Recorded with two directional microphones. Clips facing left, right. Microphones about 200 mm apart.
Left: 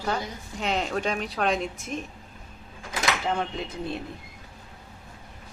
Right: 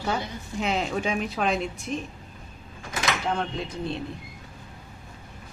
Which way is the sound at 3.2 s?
5° left (ahead or behind).